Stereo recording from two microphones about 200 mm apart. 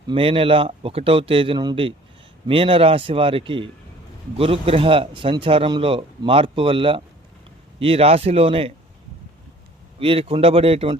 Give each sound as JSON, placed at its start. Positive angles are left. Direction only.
{"t": 0.1, "sound": "a man's voice", "side_deg": -25}
{"t": 10.0, "sound": "a man's voice", "side_deg": -30}